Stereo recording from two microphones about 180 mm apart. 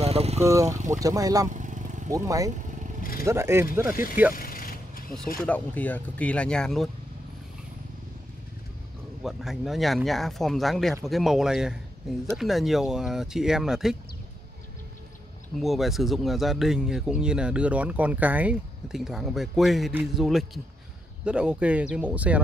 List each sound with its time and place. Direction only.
0.0 s vehicle: 35° right (ahead or behind)
0.4 s speech: 15° right (ahead or behind)
1.5 s vehicle: 45° right (ahead or behind)
2.0 s speech: 20° right (ahead or behind)
3.0 s speech: 55° left (ahead or behind)
3.3 s speech: 15° right (ahead or behind)
3.9 s speech: 50° left (ahead or behind)
4.3 s vehicle: 55° left (ahead or behind)
5.4 s speech: 10° left (ahead or behind)
9.2 s speech: centre (ahead or behind)
15.5 s speech: centre (ahead or behind)